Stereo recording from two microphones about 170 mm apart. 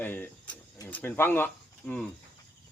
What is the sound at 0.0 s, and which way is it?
A man's voice, 10° left (ahead or behind).